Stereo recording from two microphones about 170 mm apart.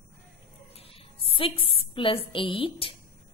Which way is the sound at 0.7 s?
35° left (ahead or behind).